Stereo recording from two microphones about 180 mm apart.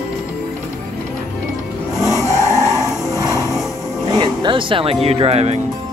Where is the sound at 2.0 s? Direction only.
15° left (ahead or behind).